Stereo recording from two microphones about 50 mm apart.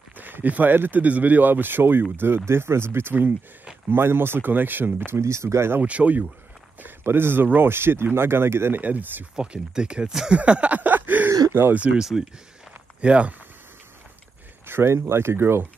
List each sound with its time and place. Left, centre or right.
0.2 s speech: right
5.2 s speech: right
5.8 s speech: right
6.8 s speech: right
8.7 s speech: right
9.3 s speech: centre
10.3 s a sound: right
11.2 s a sound: right
11.7 s speech: right
12.0 s speech: centre
13.0 s speech: right
14.7 s speech: right